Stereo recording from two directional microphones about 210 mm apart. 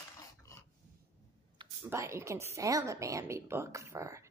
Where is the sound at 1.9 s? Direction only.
15° right (ahead or behind).